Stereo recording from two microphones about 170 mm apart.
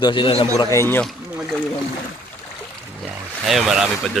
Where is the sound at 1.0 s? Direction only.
Centre (ahead or behind).